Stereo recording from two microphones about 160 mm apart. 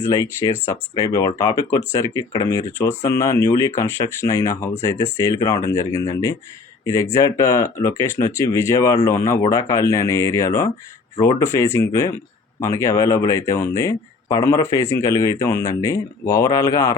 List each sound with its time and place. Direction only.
0.0 s speech: 25° left (ahead or behind)